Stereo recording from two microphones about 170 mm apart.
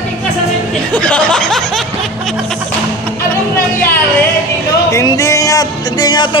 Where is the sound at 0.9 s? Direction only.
5° left (ahead or behind).